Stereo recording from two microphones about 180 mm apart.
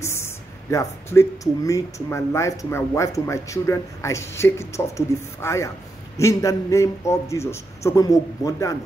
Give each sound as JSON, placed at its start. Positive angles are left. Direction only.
{"t": 0.0, "sound": "speech", "side_deg": 15}